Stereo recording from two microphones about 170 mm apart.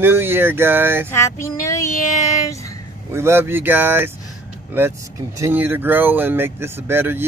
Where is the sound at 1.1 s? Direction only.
15° left (ahead or behind).